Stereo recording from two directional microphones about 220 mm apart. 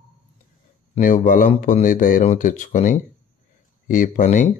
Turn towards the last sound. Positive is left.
turn(degrees=35)  # may be behind; listen again after turning